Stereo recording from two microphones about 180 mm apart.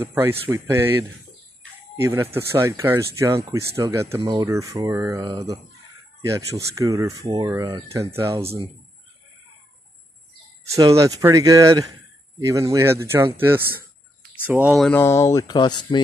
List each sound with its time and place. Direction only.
0.0 s speech: 15° right (ahead or behind)
2.0 s speech: 15° right (ahead or behind)
8.4 s speech: 35° right (ahead or behind)
10.7 s speech: 15° right (ahead or behind)
14.8 s speech: 10° left (ahead or behind)